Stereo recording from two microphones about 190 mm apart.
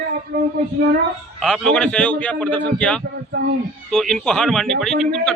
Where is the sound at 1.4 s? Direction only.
5° left (ahead or behind).